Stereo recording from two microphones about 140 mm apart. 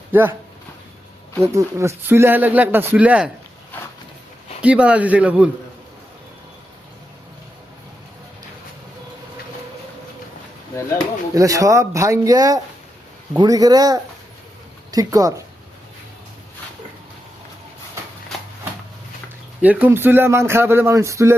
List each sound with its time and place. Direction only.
0.1 s speech: 15° right (ahead or behind)
1.4 s speech: 20° right (ahead or behind)
4.6 s speech: 10° right (ahead or behind)
11.3 s speech: 25° right (ahead or behind)
19.6 s speech: 10° right (ahead or behind)